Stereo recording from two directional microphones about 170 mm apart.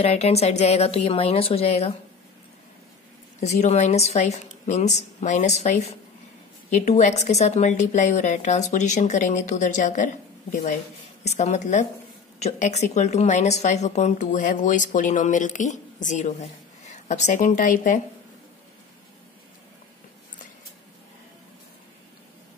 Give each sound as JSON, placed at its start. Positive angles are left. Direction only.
{"t": 0.0, "sound": "a woman's voice", "side_deg": 40}
{"t": 3.3, "sound": "a woman's voice", "side_deg": 45}